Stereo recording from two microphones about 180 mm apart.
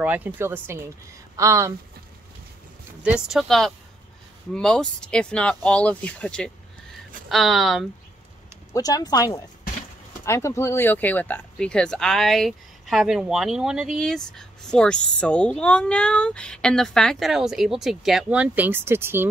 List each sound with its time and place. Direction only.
0.0 s a woman's voice: 10° right (ahead or behind)
3.0 s speech: 5° right (ahead or behind)
8.7 s speech: 20° left (ahead or behind); by 19.2 s 15° right (ahead or behind)